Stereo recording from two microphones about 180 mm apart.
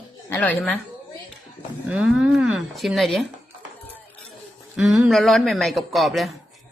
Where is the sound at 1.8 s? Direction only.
5° right (ahead or behind).